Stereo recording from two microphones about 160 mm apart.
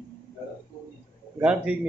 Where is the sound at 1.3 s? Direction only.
10° right (ahead or behind).